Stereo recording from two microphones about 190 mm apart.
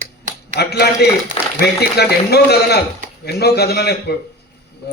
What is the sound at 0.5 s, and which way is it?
A man's voice, 60° left (ahead or behind).